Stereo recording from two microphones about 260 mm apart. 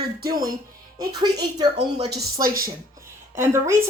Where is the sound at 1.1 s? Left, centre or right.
Centre.